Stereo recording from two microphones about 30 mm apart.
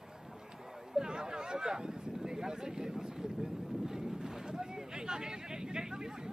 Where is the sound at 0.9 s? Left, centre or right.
Right.